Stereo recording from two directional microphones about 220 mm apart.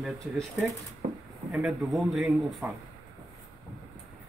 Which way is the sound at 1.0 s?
35° right (ahead or behind).